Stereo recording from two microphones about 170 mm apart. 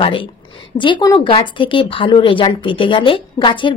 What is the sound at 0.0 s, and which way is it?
A woman's voice, 30° left (ahead or behind).